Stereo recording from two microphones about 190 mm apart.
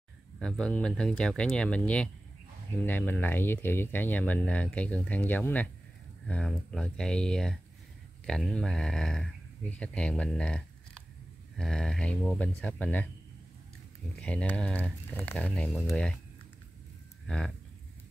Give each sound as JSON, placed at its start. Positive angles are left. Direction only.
{"t": 0.4, "sound": "speech", "side_deg": 5}
{"t": 14.1, "sound": "speech", "side_deg": 5}